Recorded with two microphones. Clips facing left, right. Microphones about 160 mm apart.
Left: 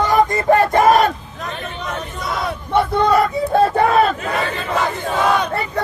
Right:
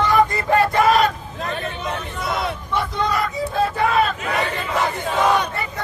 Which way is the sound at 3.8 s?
40° left (ahead or behind).